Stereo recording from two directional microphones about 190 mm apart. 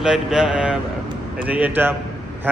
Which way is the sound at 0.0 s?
5° right (ahead or behind).